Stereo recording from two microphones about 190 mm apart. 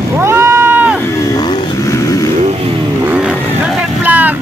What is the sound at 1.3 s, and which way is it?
Motorcycle, 20° left (ahead or behind).